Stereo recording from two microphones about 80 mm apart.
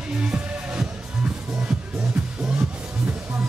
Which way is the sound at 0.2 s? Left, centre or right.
Centre.